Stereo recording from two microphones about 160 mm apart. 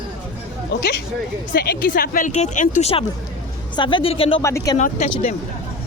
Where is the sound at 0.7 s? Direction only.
90° left.